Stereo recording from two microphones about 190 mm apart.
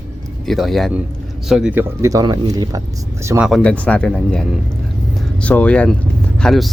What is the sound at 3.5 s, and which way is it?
Speech, 5° left (ahead or behind).